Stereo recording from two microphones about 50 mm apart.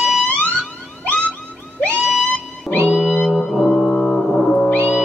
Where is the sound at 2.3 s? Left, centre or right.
Left.